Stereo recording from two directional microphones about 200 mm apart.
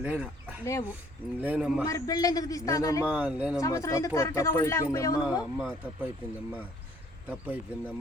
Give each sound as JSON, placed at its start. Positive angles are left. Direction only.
{"t": 0.0, "sound": "speech", "side_deg": -5}
{"t": 0.6, "sound": "speech", "side_deg": 15}
{"t": 1.4, "sound": "speech", "side_deg": -5}
{"t": 1.8, "sound": "speech", "side_deg": 15}
{"t": 3.1, "sound": "speech", "side_deg": -5}
{"t": 3.6, "sound": "speech", "side_deg": 15}
{"t": 5.4, "sound": "speech", "side_deg": -5}
{"t": 7.3, "sound": "speech", "side_deg": -10}